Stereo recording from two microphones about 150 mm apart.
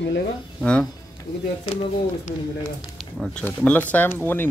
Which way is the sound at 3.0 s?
5° left (ahead or behind).